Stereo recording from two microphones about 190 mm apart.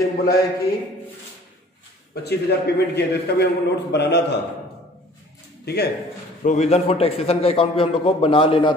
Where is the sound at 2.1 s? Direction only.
60° left (ahead or behind).